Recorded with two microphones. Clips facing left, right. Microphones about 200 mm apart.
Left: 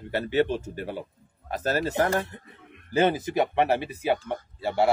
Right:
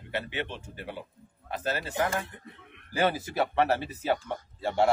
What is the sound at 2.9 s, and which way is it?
A man's voice, 20° left (ahead or behind).